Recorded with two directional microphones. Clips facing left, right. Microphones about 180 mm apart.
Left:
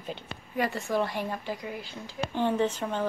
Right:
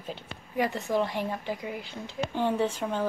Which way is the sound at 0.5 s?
15° right (ahead or behind).